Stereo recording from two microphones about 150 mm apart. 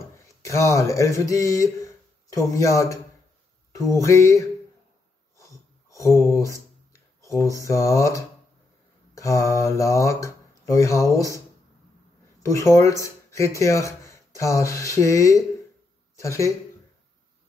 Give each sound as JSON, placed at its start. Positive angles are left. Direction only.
{"t": 0.4, "sound": "speech", "side_deg": 20}
{"t": 5.4, "sound": "a sound", "side_deg": 20}
{"t": 9.1, "sound": "speech", "side_deg": 20}
{"t": 12.4, "sound": "speech", "side_deg": 20}